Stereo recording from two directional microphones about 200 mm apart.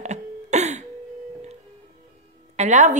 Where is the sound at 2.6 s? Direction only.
35° right (ahead or behind).